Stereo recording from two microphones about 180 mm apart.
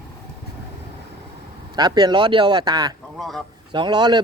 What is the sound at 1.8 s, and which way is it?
Speech, 25° right (ahead or behind).